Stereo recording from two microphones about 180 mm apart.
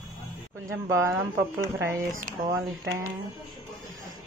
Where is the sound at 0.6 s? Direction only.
15° right (ahead or behind).